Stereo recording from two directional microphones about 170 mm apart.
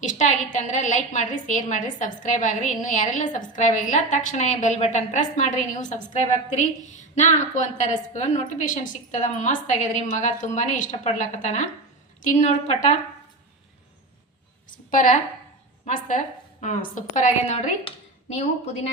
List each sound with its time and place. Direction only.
0.0 s a woman's voice: 45° left (ahead or behind)
14.8 s a woman's voice: 50° left (ahead or behind)